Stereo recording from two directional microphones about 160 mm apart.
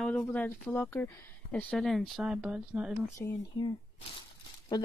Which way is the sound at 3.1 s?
25° left (ahead or behind).